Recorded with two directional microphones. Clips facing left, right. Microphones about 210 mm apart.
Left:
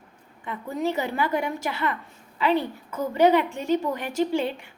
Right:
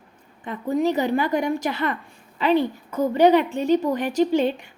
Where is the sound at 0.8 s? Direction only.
15° right (ahead or behind).